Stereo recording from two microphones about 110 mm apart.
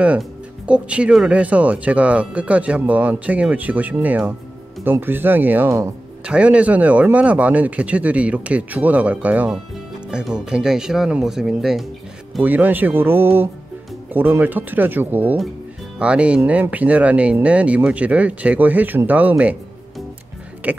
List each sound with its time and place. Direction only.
0.7 s speech: 10° right (ahead or behind)
12.4 s speech: 15° right (ahead or behind)
20.6 s speech: 15° right (ahead or behind)